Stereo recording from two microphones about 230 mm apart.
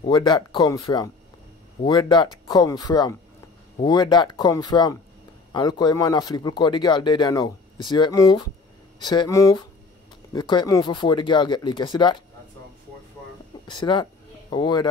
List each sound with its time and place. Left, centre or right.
0.0 s speech: centre
13.7 s speech: centre